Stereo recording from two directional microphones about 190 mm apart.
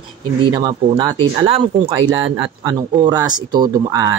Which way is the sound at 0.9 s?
25° right (ahead or behind).